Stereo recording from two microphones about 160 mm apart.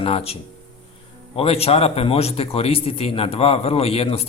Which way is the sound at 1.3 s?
40° left (ahead or behind).